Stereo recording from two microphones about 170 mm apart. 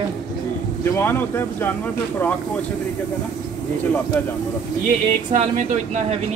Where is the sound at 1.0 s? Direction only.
15° left (ahead or behind).